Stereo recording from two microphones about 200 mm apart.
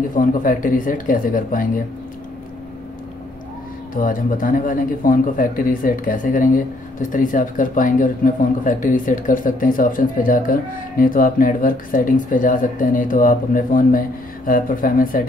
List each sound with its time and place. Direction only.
0.1 s speech: 40° left (ahead or behind)
3.9 s speech: 45° left (ahead or behind)